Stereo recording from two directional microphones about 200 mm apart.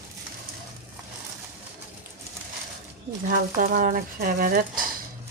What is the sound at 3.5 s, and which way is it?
Speech, 40° right (ahead or behind).